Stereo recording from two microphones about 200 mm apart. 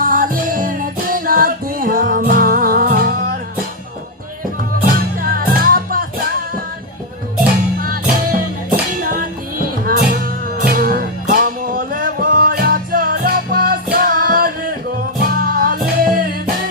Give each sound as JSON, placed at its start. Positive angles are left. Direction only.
{"t": 0.0, "sound": "music", "side_deg": -45}
{"t": 5.1, "sound": "music", "side_deg": -45}
{"t": 7.8, "sound": "music", "side_deg": -45}